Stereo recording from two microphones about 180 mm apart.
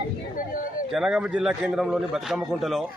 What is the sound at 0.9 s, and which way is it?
A man's voice, centre (ahead or behind).